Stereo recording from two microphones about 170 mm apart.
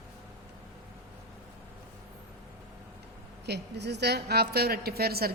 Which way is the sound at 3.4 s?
80° right.